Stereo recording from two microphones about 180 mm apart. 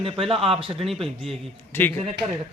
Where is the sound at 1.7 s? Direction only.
10° left (ahead or behind).